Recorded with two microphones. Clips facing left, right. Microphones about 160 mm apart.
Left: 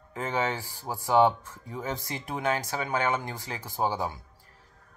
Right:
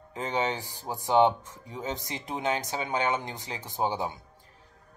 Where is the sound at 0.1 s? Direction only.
20° right (ahead or behind).